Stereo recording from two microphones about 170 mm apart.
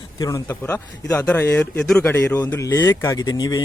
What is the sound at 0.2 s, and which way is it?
Speech, 20° left (ahead or behind).